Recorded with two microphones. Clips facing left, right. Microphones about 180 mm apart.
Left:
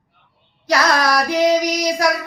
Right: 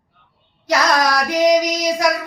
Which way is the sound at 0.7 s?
20° right (ahead or behind).